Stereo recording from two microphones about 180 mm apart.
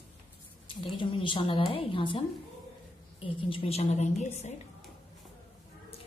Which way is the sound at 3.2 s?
30° left (ahead or behind).